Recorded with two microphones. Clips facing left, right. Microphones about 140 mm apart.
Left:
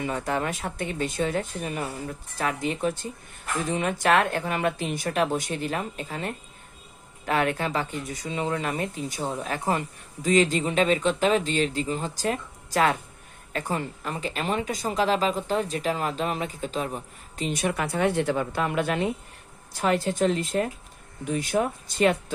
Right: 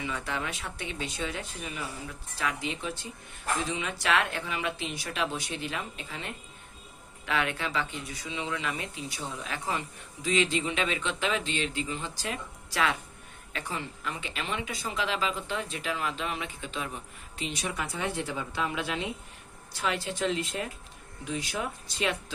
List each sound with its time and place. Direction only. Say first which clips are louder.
0.0 s speech: left 7 dB; 45° left (ahead or behind)